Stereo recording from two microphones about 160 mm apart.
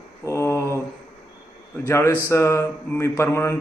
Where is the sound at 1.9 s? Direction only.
20° left (ahead or behind).